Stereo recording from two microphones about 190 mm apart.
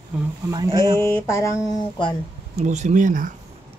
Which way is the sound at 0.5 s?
20° right (ahead or behind).